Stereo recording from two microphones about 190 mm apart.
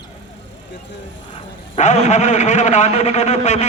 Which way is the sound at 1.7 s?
40° left (ahead or behind).